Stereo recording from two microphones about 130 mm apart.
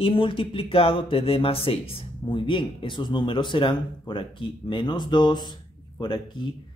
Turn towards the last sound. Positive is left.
turn(degrees=35)  # may be behind; listen again after turning